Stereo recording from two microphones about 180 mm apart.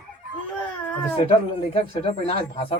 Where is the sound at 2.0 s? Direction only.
30° left (ahead or behind).